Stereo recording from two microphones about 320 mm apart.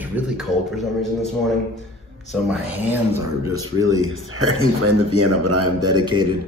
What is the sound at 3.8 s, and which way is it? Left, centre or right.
A man's voice, right.